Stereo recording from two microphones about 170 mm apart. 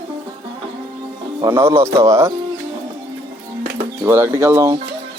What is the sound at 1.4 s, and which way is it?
Speech, 15° right (ahead or behind).